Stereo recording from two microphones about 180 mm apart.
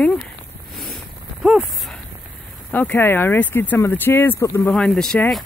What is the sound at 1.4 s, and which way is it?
Speech, 5° right (ahead or behind).